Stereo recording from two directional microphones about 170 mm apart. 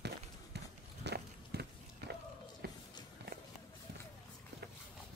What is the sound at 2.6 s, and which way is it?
Run, 65° right (ahead or behind).